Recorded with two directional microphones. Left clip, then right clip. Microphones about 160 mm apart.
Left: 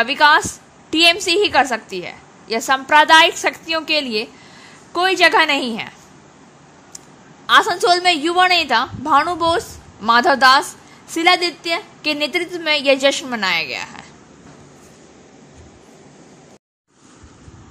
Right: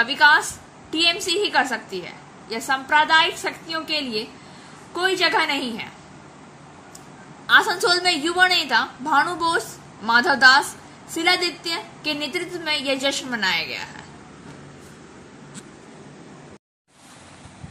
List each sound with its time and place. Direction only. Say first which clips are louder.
0.0 s a woman's voice: left 3 dB; 50° left (ahead or behind)
7.4 s a woman's voice: left 4 dB; 45° left (ahead or behind)